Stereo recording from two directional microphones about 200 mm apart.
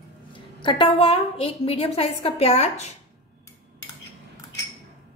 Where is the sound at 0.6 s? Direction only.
25° left (ahead or behind).